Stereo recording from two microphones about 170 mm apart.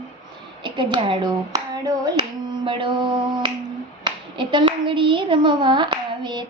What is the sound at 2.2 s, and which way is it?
Finger snapping, 30° right (ahead or behind).